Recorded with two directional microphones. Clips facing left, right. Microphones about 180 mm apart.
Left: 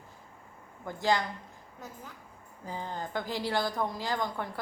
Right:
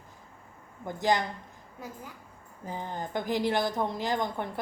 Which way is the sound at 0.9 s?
20° right (ahead or behind).